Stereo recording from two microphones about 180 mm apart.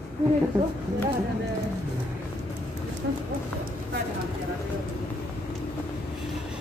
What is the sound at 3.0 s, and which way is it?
Speech, 80° right.